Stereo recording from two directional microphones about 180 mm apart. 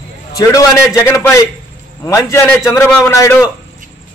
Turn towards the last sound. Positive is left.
turn(degrees=15)  # may be behind; listen again after turning